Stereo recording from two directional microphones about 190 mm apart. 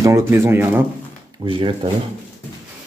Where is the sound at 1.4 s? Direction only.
25° right (ahead or behind).